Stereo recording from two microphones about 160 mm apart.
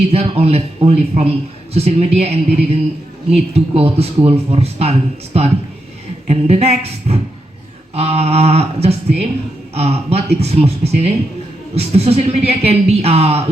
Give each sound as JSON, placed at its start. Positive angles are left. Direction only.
{"t": 0.1, "sound": "speech", "side_deg": -40}